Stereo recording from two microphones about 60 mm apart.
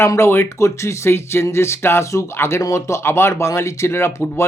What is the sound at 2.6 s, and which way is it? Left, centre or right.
Speech, left.